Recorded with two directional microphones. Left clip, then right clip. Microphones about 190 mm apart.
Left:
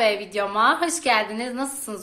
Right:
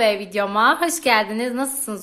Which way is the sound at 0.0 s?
25° right (ahead or behind).